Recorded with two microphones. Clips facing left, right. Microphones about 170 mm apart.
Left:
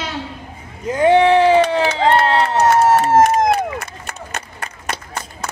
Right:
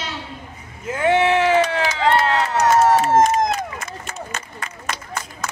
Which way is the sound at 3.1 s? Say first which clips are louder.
Left 3 dB; 60° left (ahead or behind).